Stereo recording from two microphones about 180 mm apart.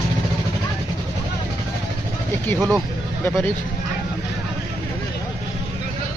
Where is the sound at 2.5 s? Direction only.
Centre (ahead or behind).